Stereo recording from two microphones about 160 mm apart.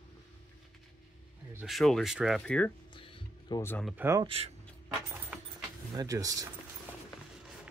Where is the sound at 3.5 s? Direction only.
25° left (ahead or behind).